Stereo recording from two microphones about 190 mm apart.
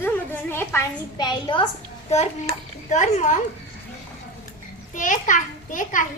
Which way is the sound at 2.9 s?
40° left (ahead or behind).